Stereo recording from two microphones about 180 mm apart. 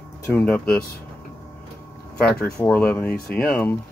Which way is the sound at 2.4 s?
10° left (ahead or behind).